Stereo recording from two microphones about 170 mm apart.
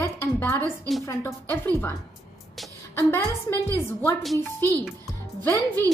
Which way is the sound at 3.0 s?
15° left (ahead or behind).